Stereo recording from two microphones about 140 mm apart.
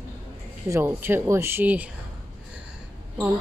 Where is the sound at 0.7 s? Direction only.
15° right (ahead or behind).